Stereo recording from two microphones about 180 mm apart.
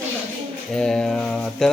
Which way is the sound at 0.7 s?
5° left (ahead or behind).